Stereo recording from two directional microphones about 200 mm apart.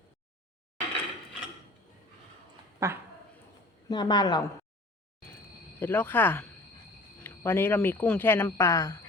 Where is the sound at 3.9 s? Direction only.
20° left (ahead or behind).